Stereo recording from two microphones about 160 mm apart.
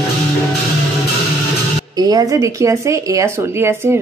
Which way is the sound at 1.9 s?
25° right (ahead or behind).